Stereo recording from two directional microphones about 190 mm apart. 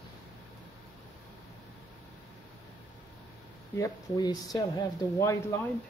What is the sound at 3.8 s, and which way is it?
Speech, 20° left (ahead or behind).